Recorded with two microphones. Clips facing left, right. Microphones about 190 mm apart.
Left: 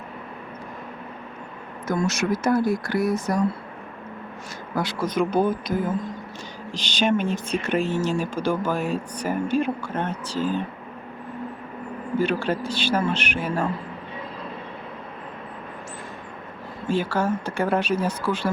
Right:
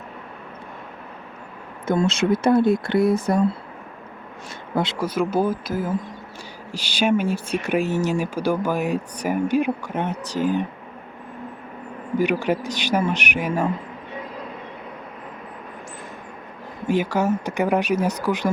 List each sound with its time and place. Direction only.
1.9 s speech: 60° right (ahead or behind)
2.5 s speech: 25° right (ahead or behind)
4.7 s speech: 25° right (ahead or behind)
4.9 s speech: 5° right (ahead or behind)
12.1 s speech: 15° right (ahead or behind)
16.9 s speech: 15° right (ahead or behind)